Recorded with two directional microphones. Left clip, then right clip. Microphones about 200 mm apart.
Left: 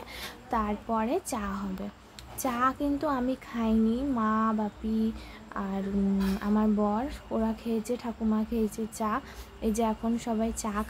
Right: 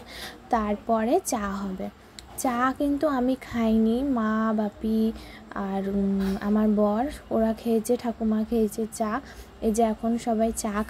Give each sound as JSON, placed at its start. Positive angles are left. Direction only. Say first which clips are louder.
{"t": 0.5, "sound": "a woman's voice", "louder": "right 6 dB", "side_deg": -20}